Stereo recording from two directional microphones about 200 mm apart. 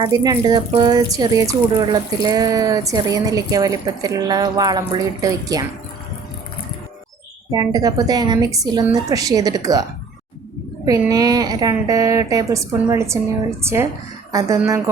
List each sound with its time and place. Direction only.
0.0 s speech: 20° right (ahead or behind)
7.5 s speech: 20° right (ahead or behind)
10.8 s a woman's voice: 15° right (ahead or behind)